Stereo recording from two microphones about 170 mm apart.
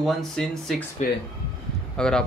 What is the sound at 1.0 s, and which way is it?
Speech, 45° left (ahead or behind).